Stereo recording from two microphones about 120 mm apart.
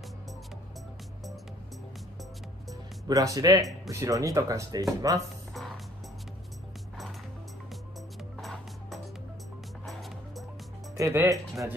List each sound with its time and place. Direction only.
3.1 s speech: 30° right (ahead or behind)
8.4 s music: centre (ahead or behind)
11.0 s speech: 25° right (ahead or behind)